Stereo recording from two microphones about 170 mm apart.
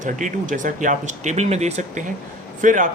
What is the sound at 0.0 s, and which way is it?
Speech, 50° right (ahead or behind).